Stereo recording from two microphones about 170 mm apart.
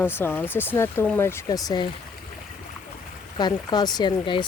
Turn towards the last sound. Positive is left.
turn(degrees=30)  # may be behind; listen again after turning